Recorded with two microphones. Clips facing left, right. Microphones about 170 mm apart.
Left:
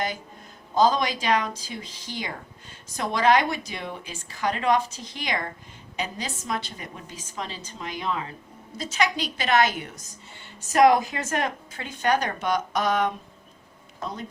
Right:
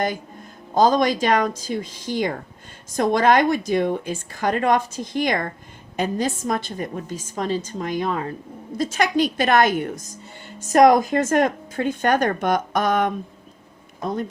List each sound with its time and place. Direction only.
0.7 s speech: 45° right (ahead or behind)